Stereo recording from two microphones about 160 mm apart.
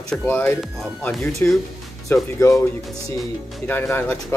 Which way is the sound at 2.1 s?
20° left (ahead or behind).